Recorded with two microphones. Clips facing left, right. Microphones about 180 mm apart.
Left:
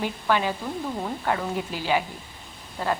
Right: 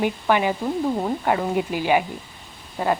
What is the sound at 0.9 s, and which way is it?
Speech, 30° right (ahead or behind).